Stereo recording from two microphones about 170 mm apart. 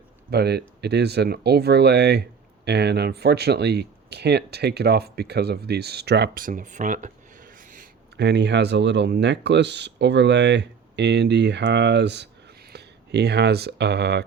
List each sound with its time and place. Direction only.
0.3 s speech: 70° right (ahead or behind); by 7.7 s 50° right (ahead or behind)
8.1 s speech: 85° right
12.7 s speech: 75° right (ahead or behind)